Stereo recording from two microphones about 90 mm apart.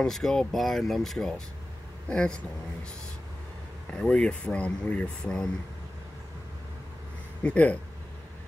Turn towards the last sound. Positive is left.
turn(degrees=15)  # may be behind; listen again after turning